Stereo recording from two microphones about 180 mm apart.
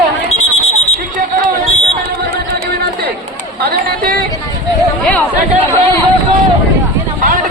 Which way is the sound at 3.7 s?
55° right (ahead or behind).